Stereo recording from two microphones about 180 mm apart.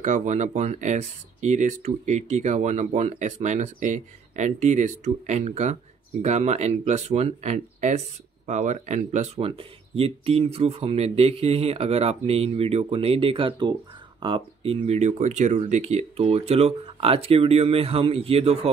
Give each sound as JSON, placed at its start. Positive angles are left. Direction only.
{"t": 0.0, "sound": "speech", "side_deg": -45}